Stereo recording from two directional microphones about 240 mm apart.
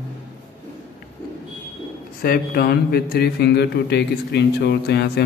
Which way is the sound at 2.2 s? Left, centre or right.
Left.